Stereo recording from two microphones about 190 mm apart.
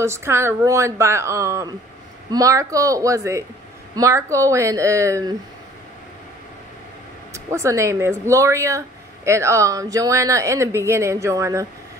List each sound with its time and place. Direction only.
0.0 s speech: 15° right (ahead or behind)
7.3 s speech: 15° right (ahead or behind)